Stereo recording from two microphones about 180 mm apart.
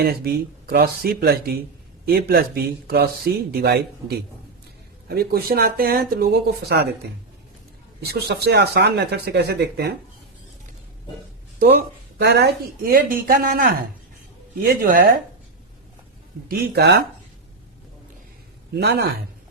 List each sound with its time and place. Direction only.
0.0 s a man's voice: 55° right (ahead or behind)
8.0 s a man's voice: 60° right (ahead or behind)
11.6 s speech: 65° right (ahead or behind)
16.5 s speech: 65° right (ahead or behind)
18.7 s a man's voice: 65° right (ahead or behind)